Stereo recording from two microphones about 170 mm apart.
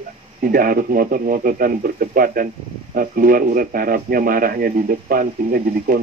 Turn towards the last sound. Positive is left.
turn(degrees=-60)  # may be behind; listen again after turning